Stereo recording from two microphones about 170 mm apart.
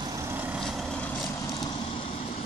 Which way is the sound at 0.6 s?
Centre (ahead or behind).